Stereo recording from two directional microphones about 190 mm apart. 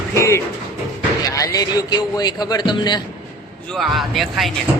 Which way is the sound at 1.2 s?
15° left (ahead or behind).